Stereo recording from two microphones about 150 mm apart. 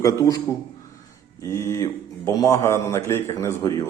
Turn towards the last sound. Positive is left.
turn(degrees=20)  # may be behind; listen again after turning